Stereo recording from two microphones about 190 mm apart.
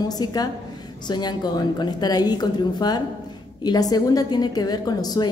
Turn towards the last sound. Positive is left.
turn(degrees=20)  # may be behind; listen again after turning